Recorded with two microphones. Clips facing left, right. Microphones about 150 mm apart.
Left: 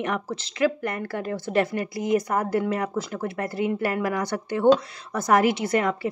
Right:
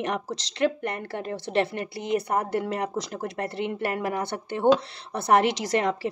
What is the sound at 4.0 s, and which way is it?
Speech, 25° right (ahead or behind).